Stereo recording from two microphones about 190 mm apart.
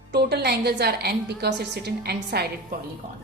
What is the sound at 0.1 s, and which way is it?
A woman's voice, 60° right (ahead or behind).